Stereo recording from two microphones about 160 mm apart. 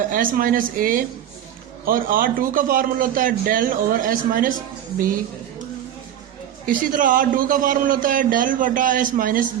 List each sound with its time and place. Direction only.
0.1 s a man's voice: 60° right (ahead or behind)
6.7 s a man's voice: 55° right (ahead or behind)